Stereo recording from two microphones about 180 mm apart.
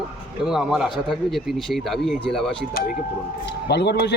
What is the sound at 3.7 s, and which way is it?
Speech, 70° left (ahead or behind).